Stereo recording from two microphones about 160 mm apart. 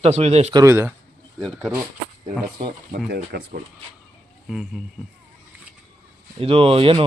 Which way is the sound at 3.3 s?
90° right.